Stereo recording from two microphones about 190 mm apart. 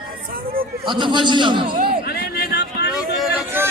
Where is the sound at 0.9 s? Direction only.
25° right (ahead or behind).